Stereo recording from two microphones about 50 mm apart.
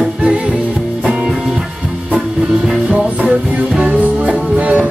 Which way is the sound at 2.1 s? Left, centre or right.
Centre.